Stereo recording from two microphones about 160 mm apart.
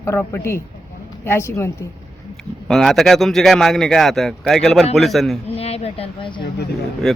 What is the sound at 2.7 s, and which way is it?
A man's voice, centre (ahead or behind).